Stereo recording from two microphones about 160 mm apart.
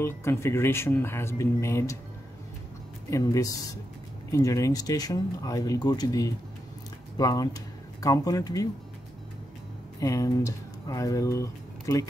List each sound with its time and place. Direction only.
0.0 s speech: 15° left (ahead or behind)
3.1 s speech: 20° left (ahead or behind)
9.9 s speech: 20° left (ahead or behind)